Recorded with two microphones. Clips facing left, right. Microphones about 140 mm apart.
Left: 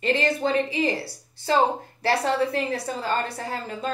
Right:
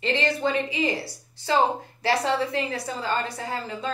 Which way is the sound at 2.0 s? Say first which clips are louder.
Left 1 dB; 50° left (ahead or behind).